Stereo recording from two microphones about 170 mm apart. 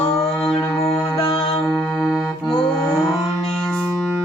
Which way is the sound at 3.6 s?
5° left (ahead or behind).